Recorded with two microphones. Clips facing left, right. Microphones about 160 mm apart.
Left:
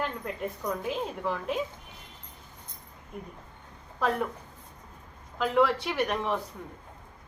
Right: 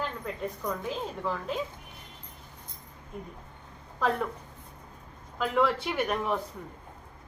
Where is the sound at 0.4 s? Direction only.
10° left (ahead or behind).